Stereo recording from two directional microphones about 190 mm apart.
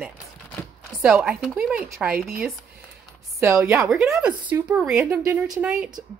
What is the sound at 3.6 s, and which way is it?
Speech, 5° right (ahead or behind).